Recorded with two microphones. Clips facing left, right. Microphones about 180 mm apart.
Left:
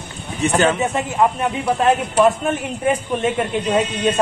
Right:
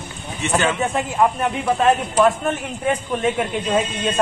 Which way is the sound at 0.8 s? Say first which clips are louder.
Left 1 dB; centre (ahead or behind).